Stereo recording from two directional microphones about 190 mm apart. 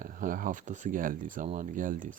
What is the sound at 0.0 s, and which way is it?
Speech, 45° right (ahead or behind).